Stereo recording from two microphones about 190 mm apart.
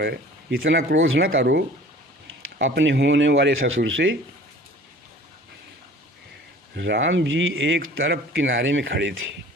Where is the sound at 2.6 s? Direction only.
75° right (ahead or behind).